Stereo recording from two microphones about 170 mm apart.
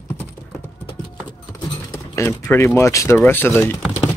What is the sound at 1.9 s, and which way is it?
Speech, 15° left (ahead or behind).